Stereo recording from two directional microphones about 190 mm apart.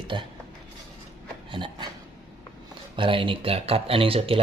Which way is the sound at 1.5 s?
25° right (ahead or behind).